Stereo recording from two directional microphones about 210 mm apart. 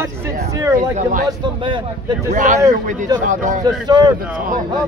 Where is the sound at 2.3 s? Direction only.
40° right (ahead or behind).